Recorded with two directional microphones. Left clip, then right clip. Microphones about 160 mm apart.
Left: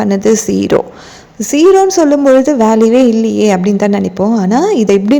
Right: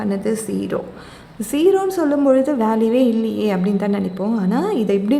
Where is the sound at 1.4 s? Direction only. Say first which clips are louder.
Left 9 dB; 30° left (ahead or behind).